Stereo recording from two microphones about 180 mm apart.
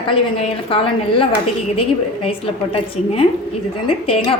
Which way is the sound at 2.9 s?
30° left (ahead or behind).